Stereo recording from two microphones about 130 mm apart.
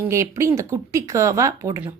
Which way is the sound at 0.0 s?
20° right (ahead or behind).